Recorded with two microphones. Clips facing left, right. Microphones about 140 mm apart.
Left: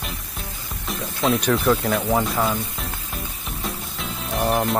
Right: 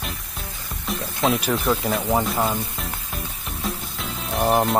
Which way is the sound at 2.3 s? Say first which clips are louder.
Left 1 dB; 20° right (ahead or behind).